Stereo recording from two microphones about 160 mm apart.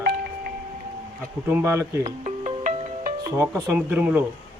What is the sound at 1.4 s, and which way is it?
Speech, 15° right (ahead or behind).